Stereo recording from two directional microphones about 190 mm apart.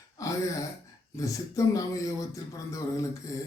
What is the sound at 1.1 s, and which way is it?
Speech, 15° left (ahead or behind).